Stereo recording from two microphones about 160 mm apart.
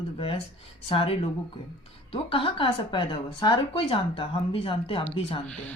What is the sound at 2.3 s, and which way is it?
A woman's voice, 35° left (ahead or behind).